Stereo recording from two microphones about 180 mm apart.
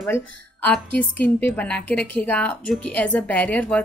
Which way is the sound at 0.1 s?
10° left (ahead or behind).